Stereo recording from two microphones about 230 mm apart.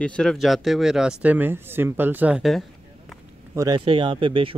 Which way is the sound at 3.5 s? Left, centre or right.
Centre.